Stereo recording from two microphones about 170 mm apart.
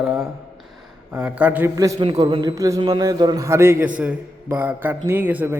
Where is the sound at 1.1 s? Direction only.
10° right (ahead or behind).